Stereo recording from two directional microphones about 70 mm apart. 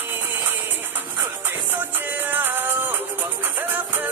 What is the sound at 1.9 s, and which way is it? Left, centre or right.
Music, right.